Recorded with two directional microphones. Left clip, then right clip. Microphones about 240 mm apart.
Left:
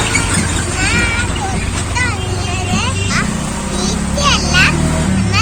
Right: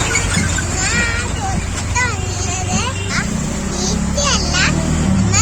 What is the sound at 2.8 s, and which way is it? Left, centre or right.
Music, centre.